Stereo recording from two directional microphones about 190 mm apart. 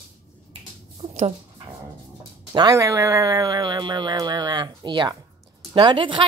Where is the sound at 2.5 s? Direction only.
20° right (ahead or behind).